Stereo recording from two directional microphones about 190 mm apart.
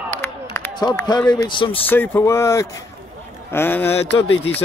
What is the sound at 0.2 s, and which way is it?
Speech, 15° left (ahead or behind).